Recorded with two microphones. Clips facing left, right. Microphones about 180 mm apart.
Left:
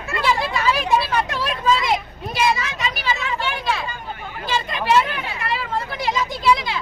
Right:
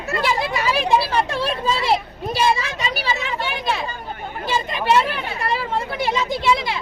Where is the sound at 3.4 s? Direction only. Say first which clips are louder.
Even; 20° right (ahead or behind).